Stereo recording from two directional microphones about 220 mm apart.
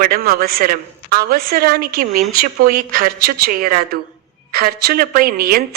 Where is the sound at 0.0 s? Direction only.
45° right (ahead or behind).